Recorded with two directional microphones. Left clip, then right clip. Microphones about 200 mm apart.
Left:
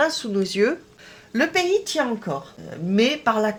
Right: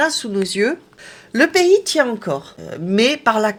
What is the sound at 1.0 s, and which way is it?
Speech, 35° right (ahead or behind).